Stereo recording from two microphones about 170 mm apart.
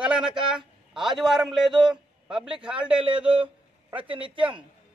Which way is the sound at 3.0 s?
30° right (ahead or behind).